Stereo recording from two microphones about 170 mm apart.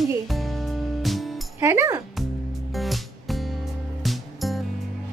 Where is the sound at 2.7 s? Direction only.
Centre (ahead or behind).